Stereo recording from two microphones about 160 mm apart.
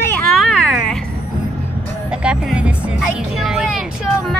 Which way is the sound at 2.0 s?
5° right (ahead or behind).